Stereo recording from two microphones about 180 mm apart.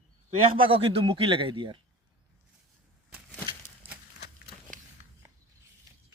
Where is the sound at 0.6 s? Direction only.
30° right (ahead or behind).